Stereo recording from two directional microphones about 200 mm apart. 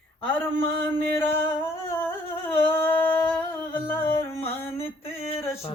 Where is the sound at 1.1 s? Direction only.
10° left (ahead or behind).